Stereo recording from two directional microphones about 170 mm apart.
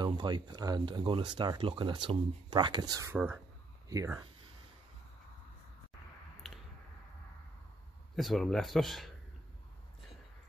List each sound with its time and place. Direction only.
0.0 s speech: 25° right (ahead or behind)
8.2 s speech: centre (ahead or behind)